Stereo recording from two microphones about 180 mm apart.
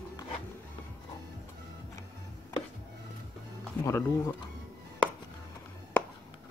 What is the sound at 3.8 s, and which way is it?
Speech, 15° left (ahead or behind).